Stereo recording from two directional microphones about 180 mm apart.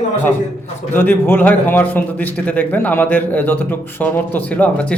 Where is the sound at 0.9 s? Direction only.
10° left (ahead or behind).